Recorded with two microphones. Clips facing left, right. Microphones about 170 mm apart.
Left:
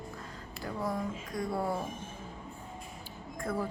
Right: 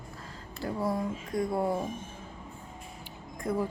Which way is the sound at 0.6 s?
25° right (ahead or behind).